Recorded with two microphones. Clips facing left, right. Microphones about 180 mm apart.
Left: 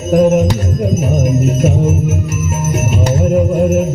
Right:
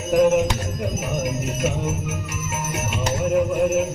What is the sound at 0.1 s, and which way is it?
Music, 40° left (ahead or behind).